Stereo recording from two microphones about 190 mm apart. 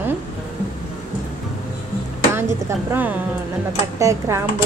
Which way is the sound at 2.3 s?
15° right (ahead or behind).